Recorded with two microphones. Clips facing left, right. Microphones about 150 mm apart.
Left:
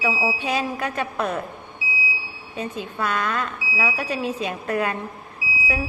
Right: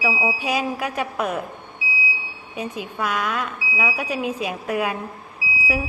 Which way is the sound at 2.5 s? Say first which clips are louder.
Even; 10° right (ahead or behind).